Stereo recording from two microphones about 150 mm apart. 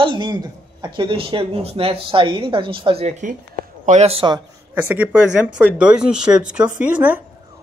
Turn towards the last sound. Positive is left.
turn(degrees=-10)  # may be behind; listen again after turning